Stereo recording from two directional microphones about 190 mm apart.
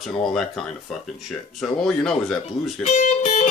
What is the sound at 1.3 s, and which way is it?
Speech, centre (ahead or behind).